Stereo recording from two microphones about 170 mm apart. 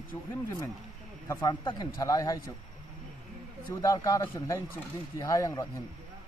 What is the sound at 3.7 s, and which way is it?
Speech, 20° left (ahead or behind).